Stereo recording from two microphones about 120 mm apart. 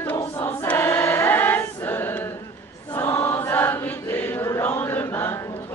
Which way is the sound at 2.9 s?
20° left (ahead or behind).